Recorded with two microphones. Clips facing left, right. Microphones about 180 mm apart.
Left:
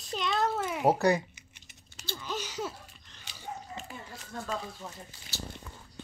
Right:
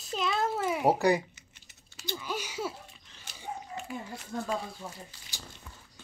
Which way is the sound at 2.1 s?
10° right (ahead or behind).